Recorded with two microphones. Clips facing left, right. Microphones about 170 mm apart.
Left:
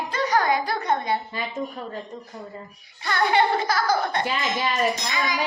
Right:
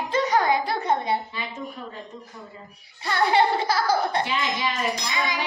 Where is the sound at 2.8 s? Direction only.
30° right (ahead or behind).